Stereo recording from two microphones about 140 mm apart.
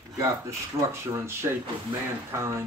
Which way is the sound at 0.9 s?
20° right (ahead or behind).